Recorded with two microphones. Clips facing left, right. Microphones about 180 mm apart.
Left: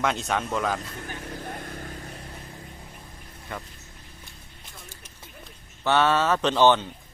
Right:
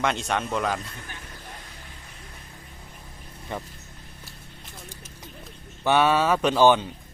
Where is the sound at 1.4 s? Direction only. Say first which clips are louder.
Left 8 dB; 55° left (ahead or behind).